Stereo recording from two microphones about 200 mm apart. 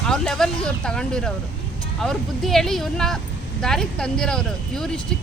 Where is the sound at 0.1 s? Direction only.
5° left (ahead or behind).